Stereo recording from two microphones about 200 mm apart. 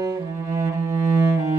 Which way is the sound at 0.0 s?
15° right (ahead or behind).